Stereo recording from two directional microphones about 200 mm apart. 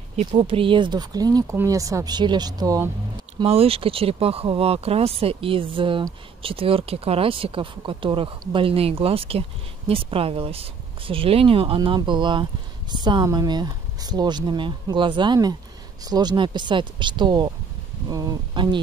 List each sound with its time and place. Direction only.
0.3 s speech: 25° right (ahead or behind)
3.3 s speech: 30° right (ahead or behind)